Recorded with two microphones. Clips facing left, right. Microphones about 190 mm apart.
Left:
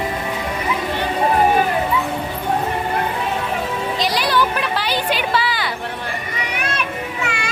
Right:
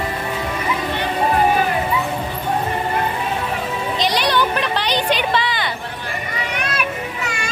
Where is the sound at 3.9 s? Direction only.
Centre (ahead or behind).